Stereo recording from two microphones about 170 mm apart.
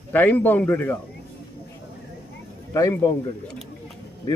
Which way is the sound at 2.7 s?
20° left (ahead or behind).